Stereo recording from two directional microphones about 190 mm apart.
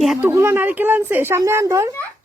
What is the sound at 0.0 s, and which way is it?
Speech, centre (ahead or behind).